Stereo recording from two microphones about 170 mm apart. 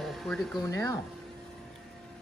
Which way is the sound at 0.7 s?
15° left (ahead or behind).